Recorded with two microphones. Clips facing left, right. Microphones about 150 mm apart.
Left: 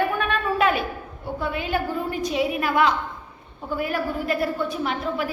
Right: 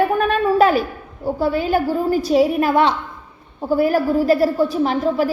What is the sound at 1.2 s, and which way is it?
A woman's voice, 35° right (ahead or behind).